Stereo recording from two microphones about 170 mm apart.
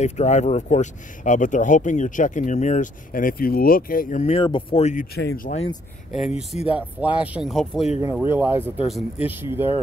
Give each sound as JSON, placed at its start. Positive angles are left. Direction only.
{"t": 0.0, "sound": "speech", "side_deg": 40}
{"t": 4.3, "sound": "speech", "side_deg": 30}
{"t": 4.9, "sound": "speech", "side_deg": 65}
{"t": 6.2, "sound": "speech", "side_deg": 0}
{"t": 8.0, "sound": "speech", "side_deg": -15}